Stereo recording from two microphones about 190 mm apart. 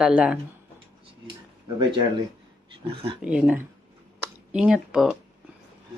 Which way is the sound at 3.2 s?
5° right (ahead or behind).